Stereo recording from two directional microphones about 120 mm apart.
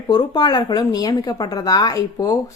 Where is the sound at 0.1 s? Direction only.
35° left (ahead or behind).